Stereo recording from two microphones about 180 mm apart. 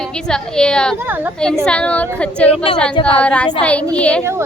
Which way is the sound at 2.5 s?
30° left (ahead or behind).